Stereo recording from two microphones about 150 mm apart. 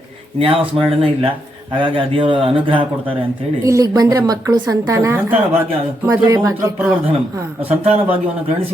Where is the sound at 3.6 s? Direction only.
20° right (ahead or behind).